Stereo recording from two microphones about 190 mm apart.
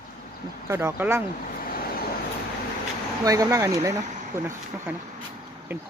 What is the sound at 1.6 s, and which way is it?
Vehicle, 50° left (ahead or behind).